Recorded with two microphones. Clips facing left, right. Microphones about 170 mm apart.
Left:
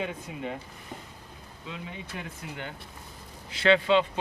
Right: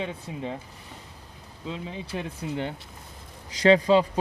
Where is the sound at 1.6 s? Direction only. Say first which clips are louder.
Right 5 dB; 30° right (ahead or behind).